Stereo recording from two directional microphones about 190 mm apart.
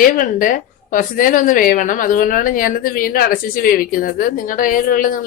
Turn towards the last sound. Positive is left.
turn(degrees=45)  # may be behind; listen again after turning